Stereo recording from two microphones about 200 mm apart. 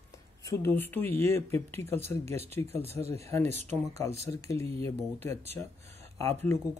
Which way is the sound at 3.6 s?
35° right (ahead or behind).